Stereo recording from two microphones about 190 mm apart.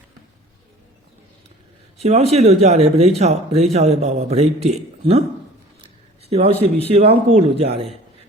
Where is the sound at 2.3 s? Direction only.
35° right (ahead or behind).